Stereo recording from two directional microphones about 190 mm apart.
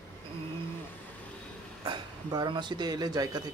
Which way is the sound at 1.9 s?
25° right (ahead or behind).